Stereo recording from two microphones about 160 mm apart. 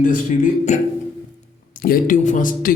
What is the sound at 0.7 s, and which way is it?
Speech, 50° left (ahead or behind).